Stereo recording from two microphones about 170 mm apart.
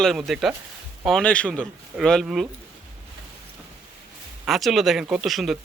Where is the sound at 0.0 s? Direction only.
Centre (ahead or behind).